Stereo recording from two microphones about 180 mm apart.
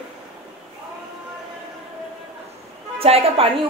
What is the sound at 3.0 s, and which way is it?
Speech, 35° right (ahead or behind).